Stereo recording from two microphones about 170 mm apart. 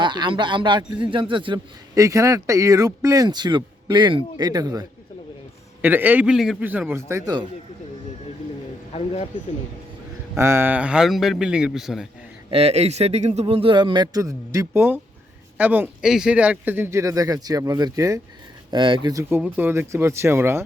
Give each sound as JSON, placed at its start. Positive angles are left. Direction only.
{"t": 0.0, "sound": "a man's voice", "side_deg": -25}
{"t": 5.8, "sound": "speech", "side_deg": -10}
{"t": 8.9, "sound": "speech", "side_deg": 40}
{"t": 10.3, "sound": "a man's voice", "side_deg": -15}
{"t": 12.5, "sound": "a man's voice", "side_deg": -35}
{"t": 19.3, "sound": "speech", "side_deg": -10}